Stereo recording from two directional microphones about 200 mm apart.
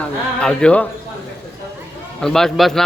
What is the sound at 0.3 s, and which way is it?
Speech, 5° left (ahead or behind).